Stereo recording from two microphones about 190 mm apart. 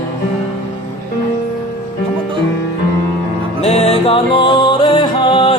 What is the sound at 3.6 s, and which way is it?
Music, 35° left (ahead or behind).